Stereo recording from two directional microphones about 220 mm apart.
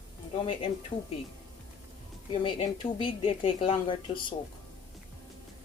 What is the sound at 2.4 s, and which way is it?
A woman's voice, 25° left (ahead or behind).